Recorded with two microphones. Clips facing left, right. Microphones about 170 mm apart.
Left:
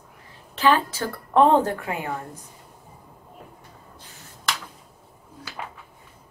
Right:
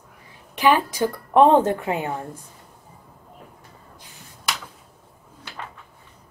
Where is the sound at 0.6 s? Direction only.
15° right (ahead or behind).